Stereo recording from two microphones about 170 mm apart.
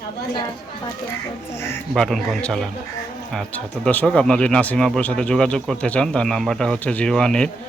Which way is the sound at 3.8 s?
5° left (ahead or behind).